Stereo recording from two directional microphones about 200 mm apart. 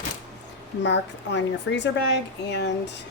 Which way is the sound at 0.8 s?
60° left (ahead or behind).